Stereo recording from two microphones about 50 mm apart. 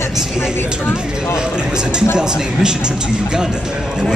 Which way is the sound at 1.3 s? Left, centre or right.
Centre.